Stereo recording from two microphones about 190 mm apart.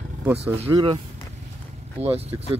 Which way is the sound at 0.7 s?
25° right (ahead or behind).